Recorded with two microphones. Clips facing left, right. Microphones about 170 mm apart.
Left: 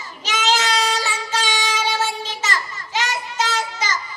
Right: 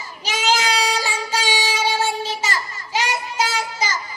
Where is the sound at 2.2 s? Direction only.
10° right (ahead or behind).